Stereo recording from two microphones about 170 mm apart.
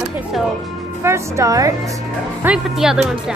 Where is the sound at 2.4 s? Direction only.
5° right (ahead or behind).